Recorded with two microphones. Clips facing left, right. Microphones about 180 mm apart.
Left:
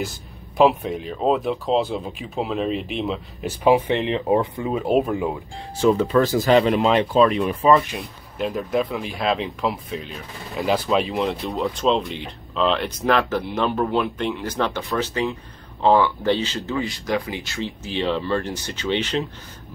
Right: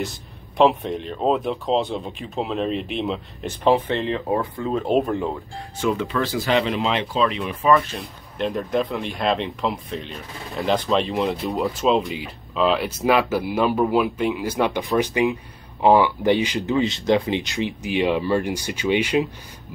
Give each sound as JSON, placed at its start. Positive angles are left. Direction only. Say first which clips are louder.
{"t": 0.6, "sound": "speech", "louder": "left 1 dB", "side_deg": 5}
{"t": 4.7, "sound": "speech", "louder": "even", "side_deg": 5}
{"t": 5.8, "sound": "speech", "louder": "left 6 dB", "side_deg": 35}
{"t": 7.8, "sound": "speech", "louder": "left 1 dB", "side_deg": 10}